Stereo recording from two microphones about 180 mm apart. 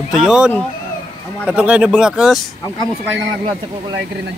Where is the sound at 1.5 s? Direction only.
5° right (ahead or behind).